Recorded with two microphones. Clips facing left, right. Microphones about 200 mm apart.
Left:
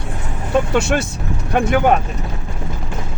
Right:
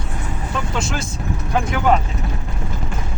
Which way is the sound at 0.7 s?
70° left (ahead or behind).